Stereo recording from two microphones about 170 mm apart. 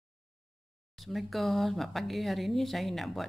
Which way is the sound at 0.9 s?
Centre (ahead or behind).